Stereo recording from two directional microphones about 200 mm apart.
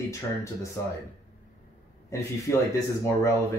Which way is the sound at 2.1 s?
15° left (ahead or behind).